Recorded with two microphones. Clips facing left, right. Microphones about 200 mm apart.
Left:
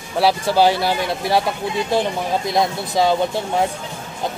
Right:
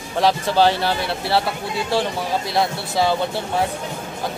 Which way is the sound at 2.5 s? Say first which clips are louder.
Left 2 dB; 15° left (ahead or behind).